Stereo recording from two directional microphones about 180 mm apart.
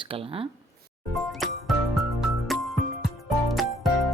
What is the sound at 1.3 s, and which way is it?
Music, centre (ahead or behind).